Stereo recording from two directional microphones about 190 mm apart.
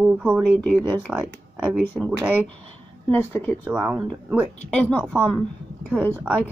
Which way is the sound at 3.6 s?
10° right (ahead or behind).